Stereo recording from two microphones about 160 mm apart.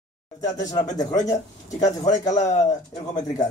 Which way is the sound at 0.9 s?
25° left (ahead or behind).